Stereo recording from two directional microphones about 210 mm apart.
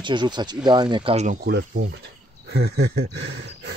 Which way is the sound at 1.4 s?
50° right (ahead or behind).